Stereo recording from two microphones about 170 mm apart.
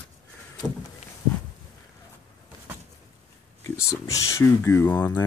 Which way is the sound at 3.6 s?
15° left (ahead or behind).